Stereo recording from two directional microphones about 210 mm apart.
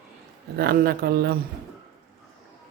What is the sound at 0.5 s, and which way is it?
Speech, 45° right (ahead or behind).